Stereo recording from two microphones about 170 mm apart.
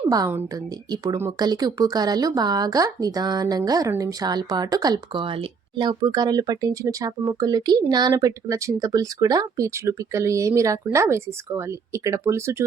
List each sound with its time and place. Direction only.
0.1 s a woman's voice: 15° right (ahead or behind)